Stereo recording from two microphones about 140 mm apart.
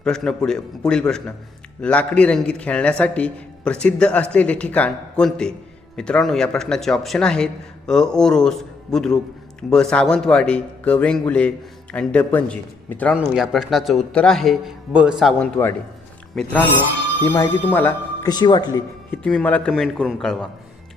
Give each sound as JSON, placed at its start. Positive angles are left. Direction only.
{"t": 0.0, "sound": "a man's voice", "side_deg": 5}
{"t": 13.1, "sound": "a man's voice", "side_deg": -5}
{"t": 18.2, "sound": "speech", "side_deg": 30}
{"t": 19.1, "sound": "a man's voice", "side_deg": 10}